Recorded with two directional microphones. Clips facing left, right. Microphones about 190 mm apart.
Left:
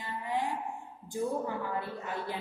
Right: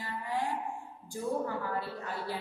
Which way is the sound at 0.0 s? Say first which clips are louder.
Left 1 dB; 20° left (ahead or behind).